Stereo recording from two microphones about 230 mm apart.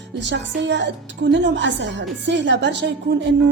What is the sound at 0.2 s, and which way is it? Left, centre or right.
Music, right.